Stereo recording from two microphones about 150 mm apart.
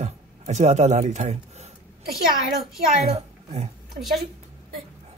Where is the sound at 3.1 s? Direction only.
45° right (ahead or behind).